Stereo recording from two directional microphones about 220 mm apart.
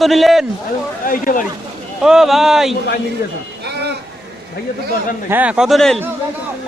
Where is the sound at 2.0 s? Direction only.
Centre (ahead or behind).